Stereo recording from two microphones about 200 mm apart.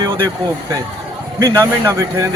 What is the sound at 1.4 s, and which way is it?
Speech, 15° right (ahead or behind).